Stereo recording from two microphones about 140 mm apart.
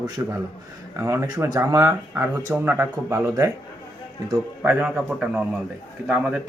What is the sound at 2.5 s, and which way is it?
Speech, 10° right (ahead or behind).